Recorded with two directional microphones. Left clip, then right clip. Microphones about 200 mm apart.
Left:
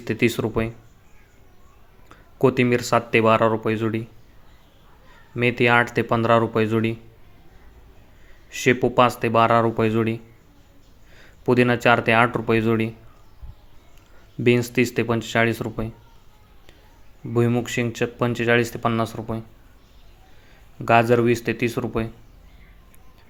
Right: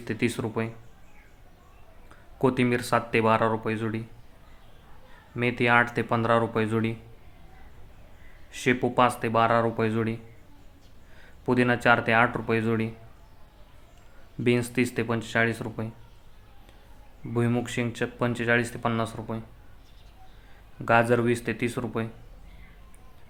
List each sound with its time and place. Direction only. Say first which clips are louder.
0.0 s speech: left 7 dB; 20° left (ahead or behind)
2.0 s speech: left 6 dB; 15° left (ahead or behind)
5.3 s speech: left 4 dB; 20° left (ahead or behind)
8.4 s speech: left 6 dB; 15° left (ahead or behind)
11.2 s speech: left 6 dB; 20° left (ahead or behind)
14.4 s speech: left 6 dB; 15° left (ahead or behind)
17.3 s speech: left 6 dB; 15° left (ahead or behind)
20.8 s speech: left 5 dB; 15° left (ahead or behind)